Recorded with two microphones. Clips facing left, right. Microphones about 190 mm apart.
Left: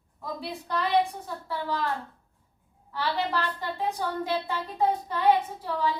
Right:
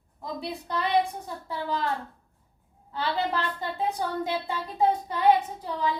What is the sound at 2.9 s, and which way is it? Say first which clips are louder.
Speech: right 1 dB; 20° right (ahead or behind).